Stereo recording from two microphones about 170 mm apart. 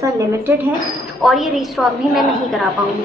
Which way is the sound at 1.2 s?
Centre (ahead or behind).